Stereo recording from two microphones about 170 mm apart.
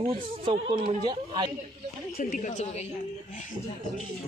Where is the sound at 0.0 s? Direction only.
35° right (ahead or behind).